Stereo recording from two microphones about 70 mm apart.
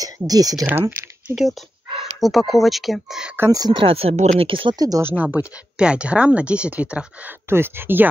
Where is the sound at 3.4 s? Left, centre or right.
Right.